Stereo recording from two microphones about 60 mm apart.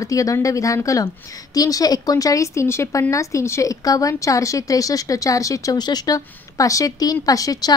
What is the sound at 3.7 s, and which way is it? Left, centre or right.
A woman's voice, left.